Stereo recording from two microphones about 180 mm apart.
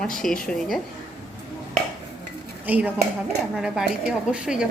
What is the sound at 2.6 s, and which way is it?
A woman's voice, 10° right (ahead or behind).